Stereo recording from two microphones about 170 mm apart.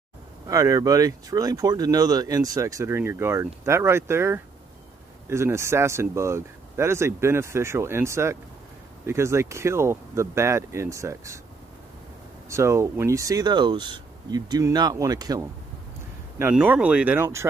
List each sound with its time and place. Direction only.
0.5 s speech: 20° right (ahead or behind)
12.4 s speech: 15° right (ahead or behind)
16.3 s speech: 10° right (ahead or behind)